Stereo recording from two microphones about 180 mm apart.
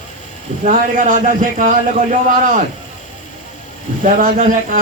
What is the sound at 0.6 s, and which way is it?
Speech, 50° right (ahead or behind).